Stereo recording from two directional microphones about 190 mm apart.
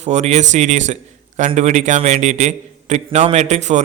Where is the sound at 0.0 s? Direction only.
35° right (ahead or behind).